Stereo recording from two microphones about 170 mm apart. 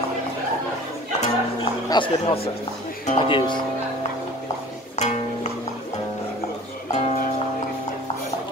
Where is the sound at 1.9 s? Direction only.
30° left (ahead or behind).